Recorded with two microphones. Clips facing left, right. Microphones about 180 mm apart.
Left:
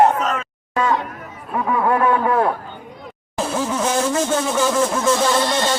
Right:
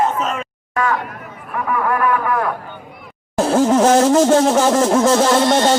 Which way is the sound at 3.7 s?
75° right (ahead or behind).